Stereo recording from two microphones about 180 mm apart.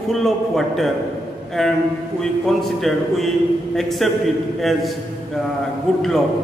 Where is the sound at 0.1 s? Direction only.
Centre (ahead or behind).